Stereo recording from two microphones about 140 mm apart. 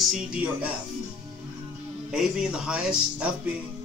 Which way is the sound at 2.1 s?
5° right (ahead or behind).